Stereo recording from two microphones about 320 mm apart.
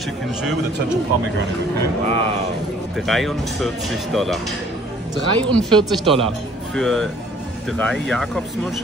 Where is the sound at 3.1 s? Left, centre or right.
Centre.